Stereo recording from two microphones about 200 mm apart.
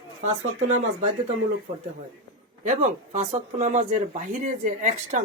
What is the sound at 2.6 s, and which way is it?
Speech, 35° right (ahead or behind).